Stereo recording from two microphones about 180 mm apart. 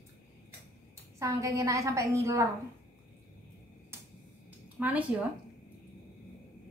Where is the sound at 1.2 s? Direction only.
20° right (ahead or behind).